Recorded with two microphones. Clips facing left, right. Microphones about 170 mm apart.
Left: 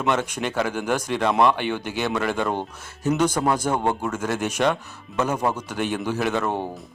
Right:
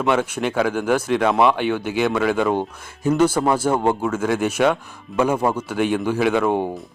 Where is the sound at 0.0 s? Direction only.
5° right (ahead or behind).